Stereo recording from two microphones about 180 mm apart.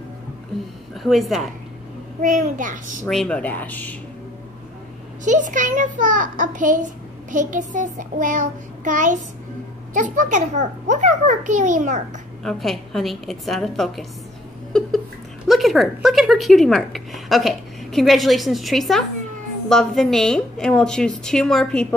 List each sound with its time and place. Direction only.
1.0 s a woman's voice: centre (ahead or behind)
2.2 s a child's voice: 45° right (ahead or behind)
3.1 s speech: 5° left (ahead or behind)
5.2 s a child's voice: 45° right (ahead or behind)
12.4 s a woman's voice: centre (ahead or behind)
15.4 s a woman's voice: centre (ahead or behind)